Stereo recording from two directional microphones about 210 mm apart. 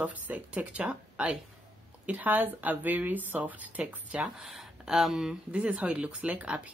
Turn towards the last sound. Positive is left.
turn(degrees=-5)  # may be behind; listen again after turning